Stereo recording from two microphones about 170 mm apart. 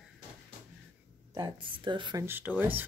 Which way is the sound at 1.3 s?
25° right (ahead or behind).